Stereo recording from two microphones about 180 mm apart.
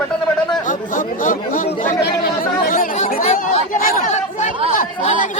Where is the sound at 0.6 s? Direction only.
45° left (ahead or behind).